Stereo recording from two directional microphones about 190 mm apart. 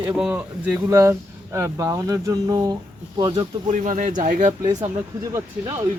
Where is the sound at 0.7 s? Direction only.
15° right (ahead or behind).